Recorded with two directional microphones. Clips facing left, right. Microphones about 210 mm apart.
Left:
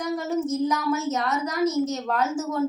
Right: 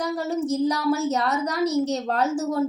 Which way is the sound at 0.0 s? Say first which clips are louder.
Even; 35° right (ahead or behind).